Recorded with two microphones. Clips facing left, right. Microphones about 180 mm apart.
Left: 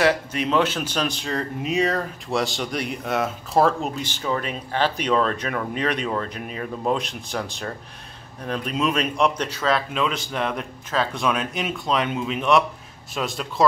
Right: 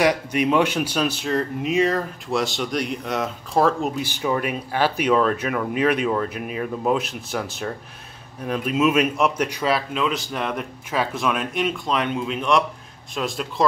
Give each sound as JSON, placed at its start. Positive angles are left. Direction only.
{"t": 0.0, "sound": "speech", "side_deg": -15}
{"t": 4.1, "sound": "speech", "side_deg": -10}